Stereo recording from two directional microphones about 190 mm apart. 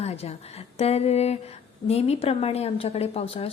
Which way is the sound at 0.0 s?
35° left (ahead or behind).